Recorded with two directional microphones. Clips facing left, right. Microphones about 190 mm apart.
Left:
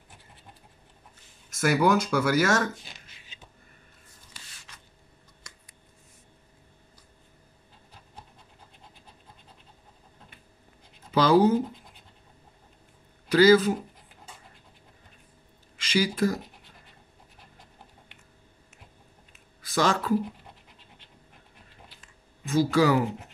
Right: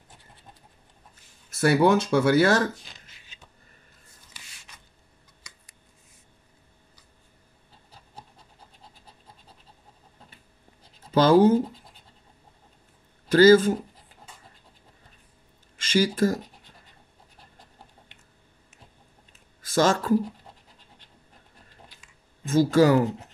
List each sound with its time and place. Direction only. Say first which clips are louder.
1.5 s speech: right 3 dB; 30° right (ahead or behind)
11.1 s speech: right 3 dB; 45° right (ahead or behind)
13.3 s speech: right 3 dB; 45° right (ahead or behind)
15.8 s speech: right 3 dB; 45° right (ahead or behind)
19.6 s speech: right 3 dB; 45° right (ahead or behind)
22.5 s speech: right 3 dB; 45° right (ahead or behind)